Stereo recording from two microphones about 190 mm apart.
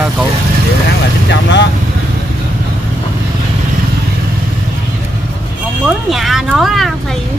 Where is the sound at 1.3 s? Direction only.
65° left (ahead or behind).